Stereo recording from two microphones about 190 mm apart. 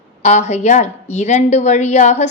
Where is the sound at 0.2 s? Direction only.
35° left (ahead or behind).